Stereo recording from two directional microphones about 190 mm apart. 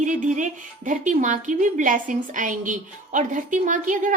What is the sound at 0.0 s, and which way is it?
Speech, 40° right (ahead or behind).